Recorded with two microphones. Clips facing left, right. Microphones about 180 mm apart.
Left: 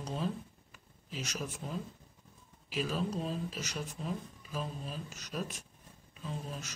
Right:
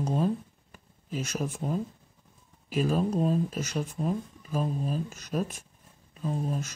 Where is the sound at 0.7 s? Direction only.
50° right (ahead or behind).